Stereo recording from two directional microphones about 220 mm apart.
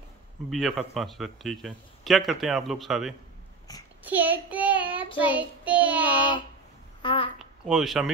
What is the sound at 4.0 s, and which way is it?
A child's voice, 5° right (ahead or behind).